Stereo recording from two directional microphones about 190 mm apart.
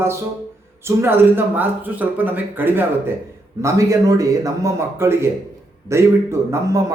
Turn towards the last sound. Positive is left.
turn(degrees=-15)  # may be behind; listen again after turning